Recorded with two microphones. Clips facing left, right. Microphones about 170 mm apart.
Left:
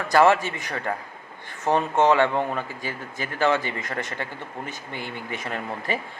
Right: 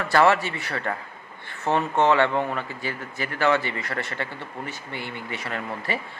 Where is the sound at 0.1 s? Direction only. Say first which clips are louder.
Left 2 dB; 15° left (ahead or behind).